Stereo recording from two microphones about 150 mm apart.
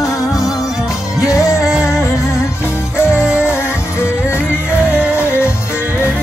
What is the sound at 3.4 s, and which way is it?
Music, 15° left (ahead or behind).